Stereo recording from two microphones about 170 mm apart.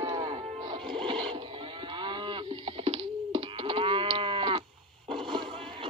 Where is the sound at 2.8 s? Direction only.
35° right (ahead or behind).